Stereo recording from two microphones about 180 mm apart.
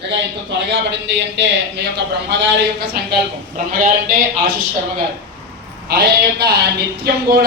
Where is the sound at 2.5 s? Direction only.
65° right (ahead or behind).